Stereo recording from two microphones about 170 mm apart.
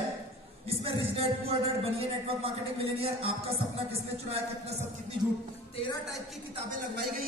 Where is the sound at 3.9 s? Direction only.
35° right (ahead or behind).